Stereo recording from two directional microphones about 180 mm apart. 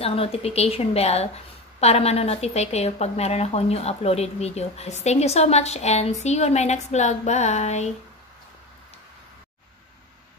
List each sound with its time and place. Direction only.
0.0 s speech: 35° left (ahead or behind)